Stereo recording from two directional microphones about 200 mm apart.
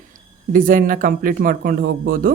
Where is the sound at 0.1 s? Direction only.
40° right (ahead or behind).